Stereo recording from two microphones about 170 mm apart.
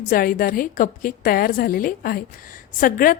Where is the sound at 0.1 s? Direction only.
55° left (ahead or behind).